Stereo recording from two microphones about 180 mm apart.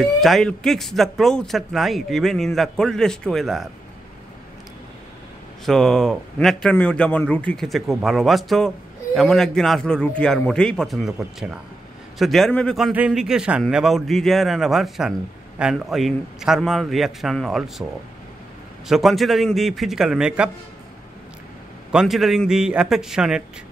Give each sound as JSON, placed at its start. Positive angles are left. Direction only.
{"t": 0.0, "sound": "a man's voice", "side_deg": 0}
{"t": 5.7, "sound": "a man's voice", "side_deg": 0}
{"t": 18.9, "sound": "a man's voice", "side_deg": 0}
{"t": 21.9, "sound": "a man's voice", "side_deg": 0}